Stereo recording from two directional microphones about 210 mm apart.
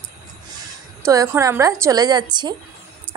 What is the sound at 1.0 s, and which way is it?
A woman's voice, 15° right (ahead or behind).